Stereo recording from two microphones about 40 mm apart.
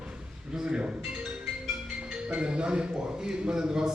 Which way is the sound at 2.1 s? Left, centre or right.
Right.